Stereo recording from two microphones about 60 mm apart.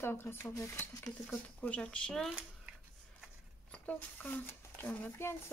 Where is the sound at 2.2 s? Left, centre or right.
Centre.